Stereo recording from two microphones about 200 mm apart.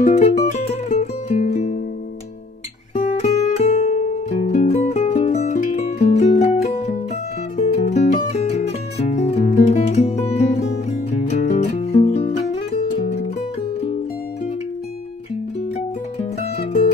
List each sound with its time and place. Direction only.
0.0 s music: 35° left (ahead or behind)
2.9 s music: 35° left (ahead or behind)
16.2 s music: 30° left (ahead or behind)